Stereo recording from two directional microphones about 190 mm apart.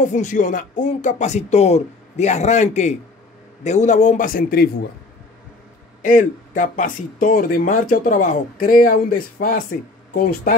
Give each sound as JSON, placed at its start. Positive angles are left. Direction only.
{"t": 0.0, "sound": "speech", "side_deg": 40}
{"t": 6.0, "sound": "speech", "side_deg": 45}